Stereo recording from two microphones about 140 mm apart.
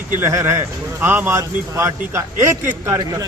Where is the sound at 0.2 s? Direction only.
20° right (ahead or behind).